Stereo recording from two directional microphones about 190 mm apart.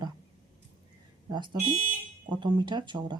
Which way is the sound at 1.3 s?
25° right (ahead or behind).